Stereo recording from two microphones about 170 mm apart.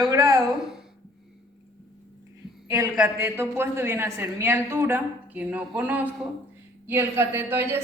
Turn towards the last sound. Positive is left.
turn(degrees=-15)  # may be behind; listen again after turning